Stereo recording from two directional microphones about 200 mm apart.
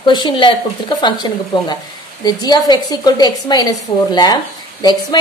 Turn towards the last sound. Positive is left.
turn(degrees=20)  # may be behind; listen again after turning